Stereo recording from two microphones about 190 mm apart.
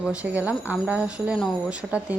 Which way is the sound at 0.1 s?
5° right (ahead or behind).